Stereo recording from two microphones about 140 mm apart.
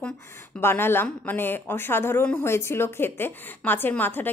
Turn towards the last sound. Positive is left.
turn(degrees=15)  # may be behind; listen again after turning